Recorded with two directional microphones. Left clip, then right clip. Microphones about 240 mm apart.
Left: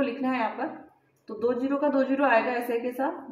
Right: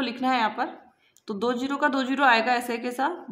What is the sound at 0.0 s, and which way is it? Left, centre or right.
A woman's voice, right.